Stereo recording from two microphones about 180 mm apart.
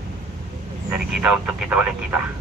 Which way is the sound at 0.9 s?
5° right (ahead or behind).